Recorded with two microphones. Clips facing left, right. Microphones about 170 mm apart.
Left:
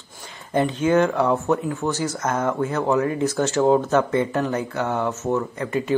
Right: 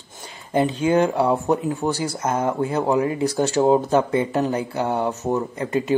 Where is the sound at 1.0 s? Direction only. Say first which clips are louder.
Right 1 dB; 30° right (ahead or behind).